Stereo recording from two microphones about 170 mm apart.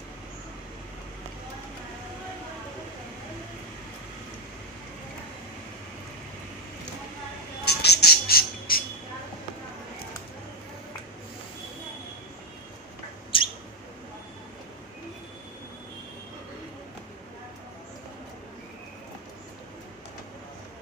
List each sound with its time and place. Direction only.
7.6 s squawk: 75° left (ahead or behind)
13.3 s bird: 30° left (ahead or behind)